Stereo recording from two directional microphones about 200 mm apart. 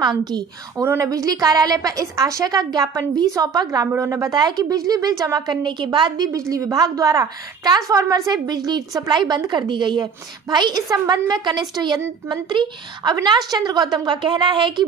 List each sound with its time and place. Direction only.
0.0 s a woman's voice: 20° right (ahead or behind)